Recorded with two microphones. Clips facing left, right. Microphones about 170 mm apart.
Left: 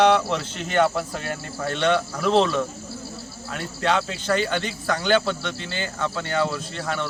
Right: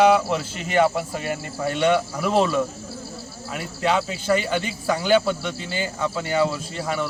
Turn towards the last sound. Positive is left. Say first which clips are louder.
# right 2 dB
turn(degrees=-5)  # may be behind; listen again after turning